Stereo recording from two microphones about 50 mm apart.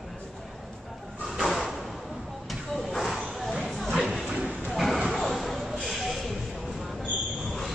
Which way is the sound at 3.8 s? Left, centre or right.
Centre.